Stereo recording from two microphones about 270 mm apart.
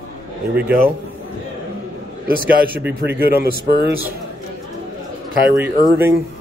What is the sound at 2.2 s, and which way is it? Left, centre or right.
Speech, right.